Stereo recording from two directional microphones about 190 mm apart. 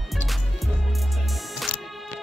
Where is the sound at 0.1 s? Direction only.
Centre (ahead or behind).